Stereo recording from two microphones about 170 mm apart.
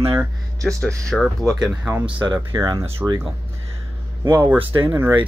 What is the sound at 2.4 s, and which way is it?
Speech, 20° right (ahead or behind).